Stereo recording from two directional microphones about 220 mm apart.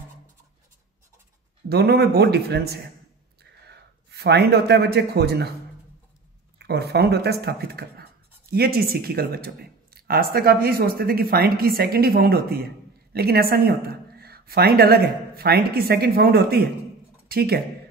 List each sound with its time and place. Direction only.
1.7 s a man's voice: 45° right (ahead or behind)
6.6 s a woman's voice: 45° right (ahead or behind)